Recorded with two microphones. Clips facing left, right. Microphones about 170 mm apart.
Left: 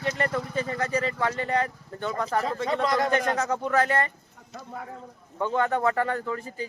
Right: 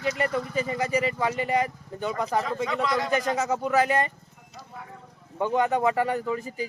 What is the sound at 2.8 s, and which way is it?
Speech, 45° left (ahead or behind).